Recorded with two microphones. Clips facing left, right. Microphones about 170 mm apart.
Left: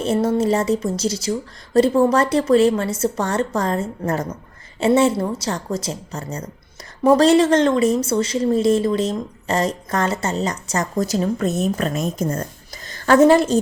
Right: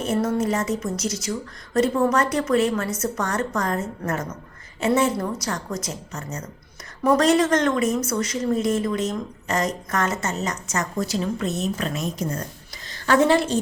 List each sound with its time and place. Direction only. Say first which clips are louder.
0.0 s a woman's voice: left 4 dB; 30° left (ahead or behind)